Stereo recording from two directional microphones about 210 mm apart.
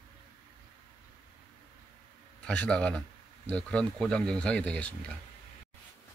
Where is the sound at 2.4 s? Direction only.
5° left (ahead or behind).